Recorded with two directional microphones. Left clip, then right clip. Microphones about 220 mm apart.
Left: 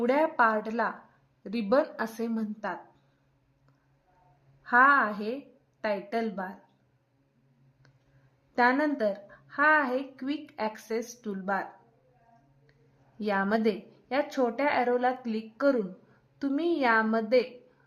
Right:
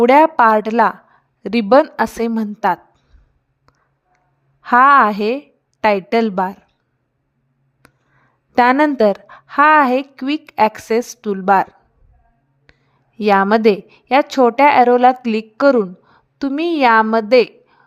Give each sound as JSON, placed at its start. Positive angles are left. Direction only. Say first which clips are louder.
{"t": 0.0, "sound": "a woman's voice", "louder": "right 15 dB", "side_deg": -40}
{"t": 4.6, "sound": "a woman's voice", "louder": "right 12 dB", "side_deg": -40}
{"t": 7.8, "sound": "a sound", "louder": "right 15 dB", "side_deg": -40}
{"t": 8.5, "sound": "a woman's voice", "louder": "right 13 dB", "side_deg": -40}
{"t": 12.7, "sound": "a sound", "louder": "right 17 dB", "side_deg": -40}
{"t": 13.1, "sound": "a woman's voice", "louder": "right 15 dB", "side_deg": -40}